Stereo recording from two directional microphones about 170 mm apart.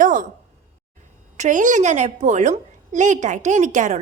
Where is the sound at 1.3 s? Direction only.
45° right (ahead or behind).